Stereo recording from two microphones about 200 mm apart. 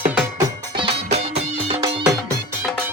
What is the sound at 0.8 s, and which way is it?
Music, 30° right (ahead or behind).